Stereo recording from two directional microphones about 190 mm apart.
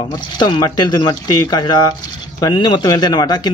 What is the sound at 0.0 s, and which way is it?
A man's voice, 25° left (ahead or behind).